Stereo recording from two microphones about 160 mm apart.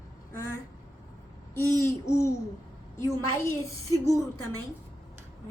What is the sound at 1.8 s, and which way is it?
A woman's voice, 15° left (ahead or behind).